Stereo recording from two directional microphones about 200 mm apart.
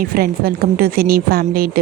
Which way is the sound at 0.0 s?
45° right (ahead or behind).